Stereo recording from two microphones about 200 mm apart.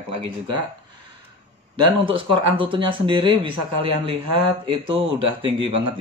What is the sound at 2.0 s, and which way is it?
Speech, 25° right (ahead or behind).